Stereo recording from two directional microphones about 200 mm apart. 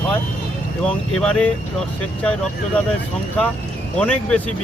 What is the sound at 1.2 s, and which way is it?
Speech, 5° left (ahead or behind).